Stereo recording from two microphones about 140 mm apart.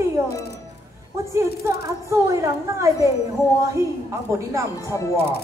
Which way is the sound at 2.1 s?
20° right (ahead or behind).